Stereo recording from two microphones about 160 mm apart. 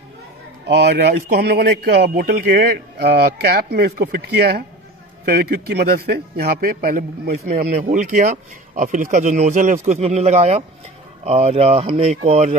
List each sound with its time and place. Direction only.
0.7 s a man's voice: 90° right; by 12.5 s 45° right (ahead or behind)